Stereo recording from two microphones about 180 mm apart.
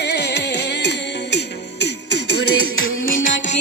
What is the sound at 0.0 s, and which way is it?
Music, 70° left (ahead or behind).